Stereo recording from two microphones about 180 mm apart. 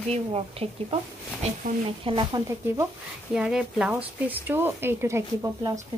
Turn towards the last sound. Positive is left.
turn(degrees=-15)  # may be behind; listen again after turning